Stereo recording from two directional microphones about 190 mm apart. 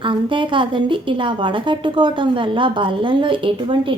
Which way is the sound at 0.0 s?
25° right (ahead or behind).